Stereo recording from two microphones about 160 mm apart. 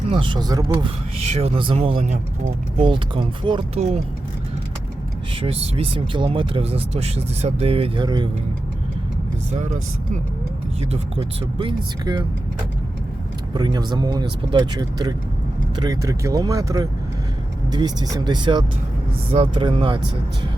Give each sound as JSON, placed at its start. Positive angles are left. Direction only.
{"t": 0.1, "sound": "speech", "side_deg": -30}
{"t": 1.3, "sound": "speech", "side_deg": -40}
{"t": 5.4, "sound": "speech", "side_deg": -35}
{"t": 10.8, "sound": "speech", "side_deg": -40}
{"t": 13.5, "sound": "speech", "side_deg": -30}